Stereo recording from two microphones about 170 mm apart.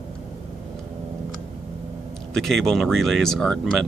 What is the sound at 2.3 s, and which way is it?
Speech, centre (ahead or behind).